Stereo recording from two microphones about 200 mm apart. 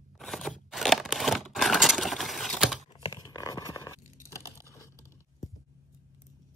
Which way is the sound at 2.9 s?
20° left (ahead or behind).